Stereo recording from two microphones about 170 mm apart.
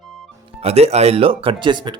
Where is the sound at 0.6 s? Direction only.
35° right (ahead or behind).